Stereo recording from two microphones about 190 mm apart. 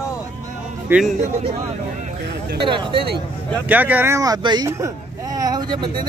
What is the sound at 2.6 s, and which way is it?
Speech, 25° right (ahead or behind).